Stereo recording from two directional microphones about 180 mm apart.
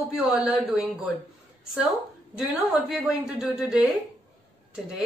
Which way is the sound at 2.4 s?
Centre (ahead or behind).